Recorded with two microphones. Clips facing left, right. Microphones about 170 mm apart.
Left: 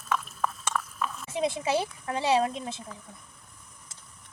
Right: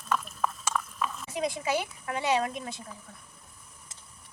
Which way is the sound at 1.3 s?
25° left (ahead or behind).